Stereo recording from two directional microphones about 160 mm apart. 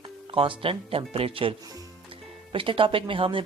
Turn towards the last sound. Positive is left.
turn(degrees=-35)  # may be behind; listen again after turning